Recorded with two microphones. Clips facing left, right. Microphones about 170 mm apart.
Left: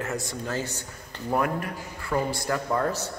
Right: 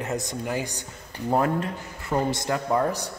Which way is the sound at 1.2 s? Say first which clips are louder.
Right 3 dB; 25° right (ahead or behind).